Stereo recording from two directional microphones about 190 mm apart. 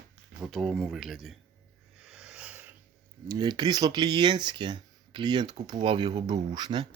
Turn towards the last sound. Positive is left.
turn(degrees=-25)  # may be behind; listen again after turning